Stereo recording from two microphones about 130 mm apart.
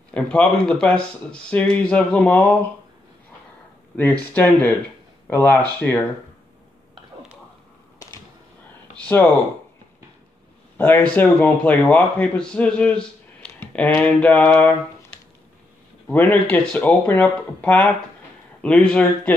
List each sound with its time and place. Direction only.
0.1 s a man's voice: 10° left (ahead or behind)
3.9 s a man's voice: 10° left (ahead or behind)
8.9 s a sound: 10° left (ahead or behind)
10.8 s a man's voice: 15° left (ahead or behind)